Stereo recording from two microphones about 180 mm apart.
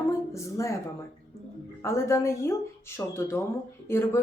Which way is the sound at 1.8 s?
15° left (ahead or behind).